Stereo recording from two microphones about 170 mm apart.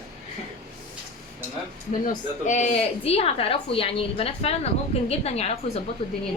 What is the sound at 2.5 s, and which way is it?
A woman's voice, 40° left (ahead or behind).